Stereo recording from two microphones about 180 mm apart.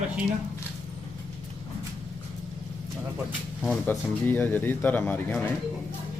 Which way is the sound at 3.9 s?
10° left (ahead or behind).